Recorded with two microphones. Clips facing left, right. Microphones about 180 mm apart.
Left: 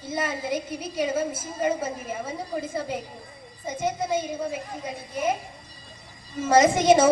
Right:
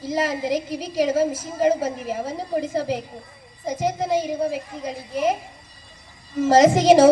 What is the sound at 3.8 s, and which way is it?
A woman's voice, 80° right.